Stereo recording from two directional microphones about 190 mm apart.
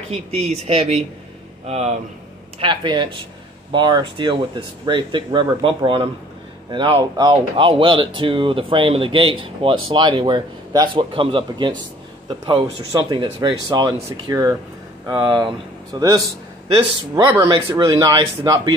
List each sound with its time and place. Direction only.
0.1 s speech: 35° right (ahead or behind)
2.6 s a man's voice: 25° right (ahead or behind)